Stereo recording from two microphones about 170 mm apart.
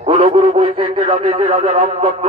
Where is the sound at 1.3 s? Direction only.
35° right (ahead or behind).